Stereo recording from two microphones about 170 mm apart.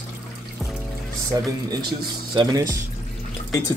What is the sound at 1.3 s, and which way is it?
Speech, 20° right (ahead or behind).